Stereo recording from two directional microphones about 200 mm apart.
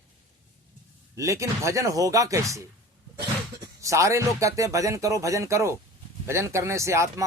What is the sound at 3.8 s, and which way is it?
Speech, 15° right (ahead or behind).